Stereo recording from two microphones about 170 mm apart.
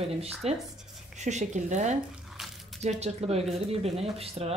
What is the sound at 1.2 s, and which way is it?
Speech, 45° right (ahead or behind).